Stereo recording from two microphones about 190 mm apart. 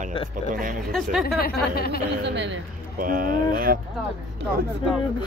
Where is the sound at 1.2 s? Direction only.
55° left (ahead or behind).